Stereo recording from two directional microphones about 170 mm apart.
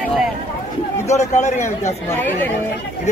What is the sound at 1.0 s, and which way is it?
Speech, 40° left (ahead or behind).